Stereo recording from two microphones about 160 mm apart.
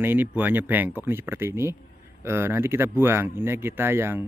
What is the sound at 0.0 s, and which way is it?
Speech, 10° right (ahead or behind).